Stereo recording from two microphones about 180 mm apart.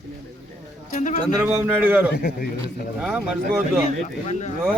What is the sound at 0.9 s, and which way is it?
Speech, 45° left (ahead or behind).